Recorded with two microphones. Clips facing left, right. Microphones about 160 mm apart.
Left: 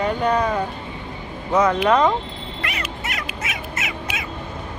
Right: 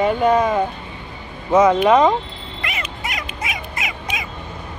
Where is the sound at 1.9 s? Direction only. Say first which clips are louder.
Right 3 dB; 20° right (ahead or behind).